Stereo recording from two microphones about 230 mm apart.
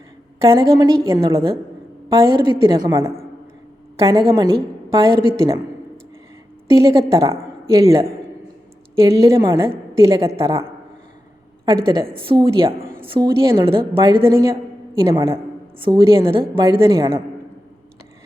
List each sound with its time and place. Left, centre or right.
0.4 s a woman's voice: centre
4.4 s a woman's voice: centre
6.7 s a woman's voice: centre
12.2 s a woman's voice: right